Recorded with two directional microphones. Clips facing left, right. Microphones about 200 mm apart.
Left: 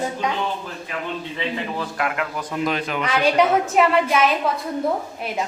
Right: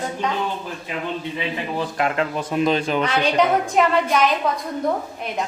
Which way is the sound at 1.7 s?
25° right (ahead or behind).